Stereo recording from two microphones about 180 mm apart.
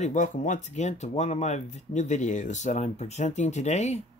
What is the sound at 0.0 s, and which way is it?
Speech, 45° left (ahead or behind).